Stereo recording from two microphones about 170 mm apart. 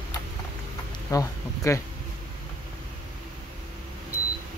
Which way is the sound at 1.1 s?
20° left (ahead or behind).